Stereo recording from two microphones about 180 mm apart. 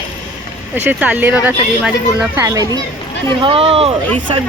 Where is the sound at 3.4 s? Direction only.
30° right (ahead or behind).